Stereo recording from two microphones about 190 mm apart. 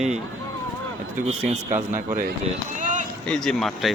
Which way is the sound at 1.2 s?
40° right (ahead or behind).